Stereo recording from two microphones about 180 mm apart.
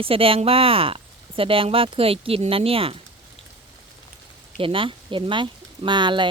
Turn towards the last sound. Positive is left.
turn(degrees=-25)  # may be behind; listen again after turning